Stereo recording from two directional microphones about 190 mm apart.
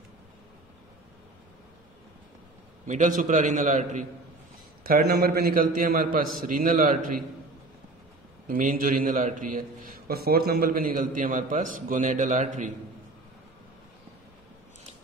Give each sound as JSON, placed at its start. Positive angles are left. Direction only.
{"t": 2.9, "sound": "a man's voice", "side_deg": -45}
{"t": 4.8, "sound": "a man's voice", "side_deg": -50}
{"t": 8.5, "sound": "a man's voice", "side_deg": -45}